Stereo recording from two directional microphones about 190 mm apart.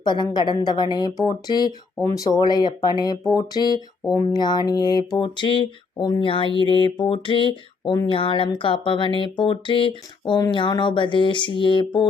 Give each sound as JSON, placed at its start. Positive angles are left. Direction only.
{"t": 0.0, "sound": "speech", "side_deg": 25}